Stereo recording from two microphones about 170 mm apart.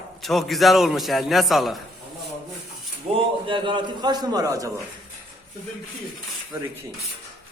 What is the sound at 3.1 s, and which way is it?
A man's voice, 30° right (ahead or behind).